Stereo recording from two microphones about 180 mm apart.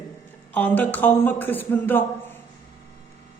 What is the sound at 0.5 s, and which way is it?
A woman's voice, 10° left (ahead or behind).